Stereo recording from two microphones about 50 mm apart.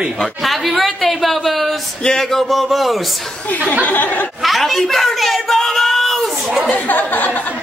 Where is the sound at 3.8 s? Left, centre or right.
Left.